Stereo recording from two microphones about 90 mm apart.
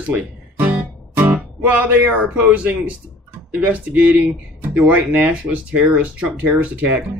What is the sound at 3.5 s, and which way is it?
Speech, 15° right (ahead or behind).